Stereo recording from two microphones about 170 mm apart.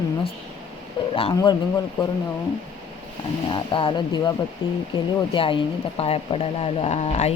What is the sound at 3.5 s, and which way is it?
Speech, 30° left (ahead or behind).